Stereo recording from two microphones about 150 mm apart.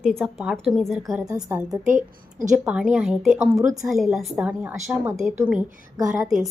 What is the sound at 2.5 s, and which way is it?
Speech, 10° right (ahead or behind).